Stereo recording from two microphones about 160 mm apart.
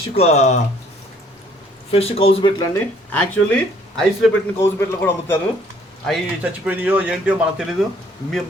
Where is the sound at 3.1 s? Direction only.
10° left (ahead or behind).